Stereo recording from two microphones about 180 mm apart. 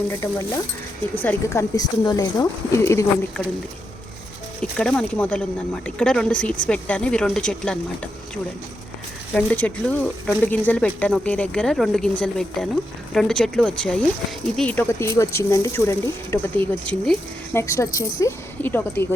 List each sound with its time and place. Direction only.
0.1 s speech: 15° left (ahead or behind)
4.8 s speech: 5° left (ahead or behind)
9.3 s speech: 5° left (ahead or behind)